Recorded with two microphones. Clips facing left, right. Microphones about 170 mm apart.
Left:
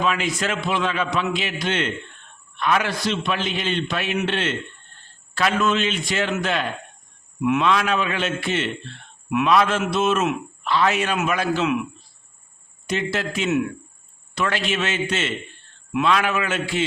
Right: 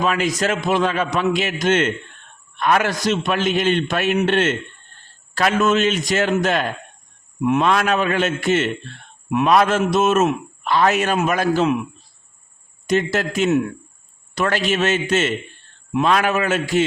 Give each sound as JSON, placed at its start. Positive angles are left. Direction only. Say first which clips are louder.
{"t": 0.0, "sound": "a man's voice", "louder": "right 3 dB", "side_deg": -45}
{"t": 12.9, "sound": "a man's voice", "louder": "right 5 dB", "side_deg": -45}